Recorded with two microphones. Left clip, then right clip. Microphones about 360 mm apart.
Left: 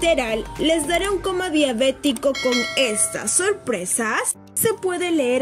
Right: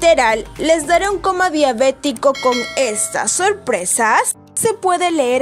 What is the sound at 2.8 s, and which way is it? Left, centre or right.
Speech, centre.